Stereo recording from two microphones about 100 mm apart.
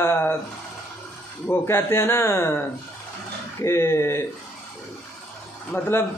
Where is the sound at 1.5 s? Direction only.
25° left (ahead or behind).